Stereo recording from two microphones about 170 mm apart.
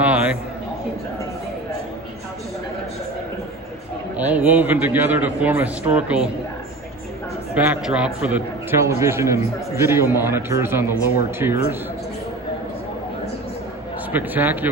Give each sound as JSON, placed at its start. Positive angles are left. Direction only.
{"t": 0.0, "sound": "a sound", "side_deg": -10}
{"t": 4.2, "sound": "a man's voice", "side_deg": -10}
{"t": 7.5, "sound": "a man's voice", "side_deg": -5}
{"t": 14.1, "sound": "a man's voice", "side_deg": -10}